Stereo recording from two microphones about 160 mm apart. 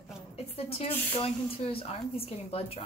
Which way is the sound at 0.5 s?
35° left (ahead or behind).